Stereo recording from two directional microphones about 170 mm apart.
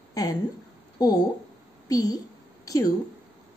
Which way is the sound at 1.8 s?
20° left (ahead or behind).